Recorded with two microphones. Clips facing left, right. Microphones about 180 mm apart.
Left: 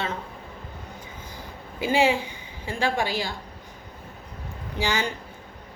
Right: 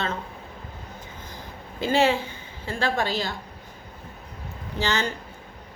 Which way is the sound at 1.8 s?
10° left (ahead or behind).